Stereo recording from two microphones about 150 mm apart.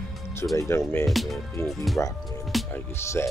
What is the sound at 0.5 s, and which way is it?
Speech, 20° left (ahead or behind).